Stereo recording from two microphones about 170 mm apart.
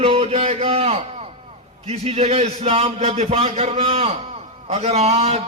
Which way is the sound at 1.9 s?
40° right (ahead or behind).